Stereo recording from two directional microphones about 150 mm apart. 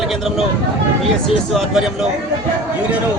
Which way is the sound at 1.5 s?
5° right (ahead or behind).